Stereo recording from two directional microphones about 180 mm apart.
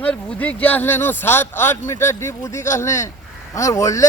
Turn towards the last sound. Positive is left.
turn(degrees=15)  # may be behind; listen again after turning